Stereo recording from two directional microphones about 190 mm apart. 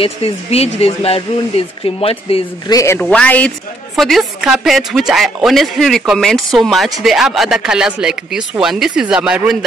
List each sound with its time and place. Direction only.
0.0 s speech: 30° left (ahead or behind)
2.7 s a woman's voice: 15° left (ahead or behind); by 9.6 s 5° right (ahead or behind)